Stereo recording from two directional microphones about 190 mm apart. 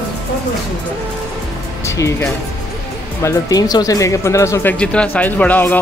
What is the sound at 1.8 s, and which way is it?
Speech, 15° left (ahead or behind).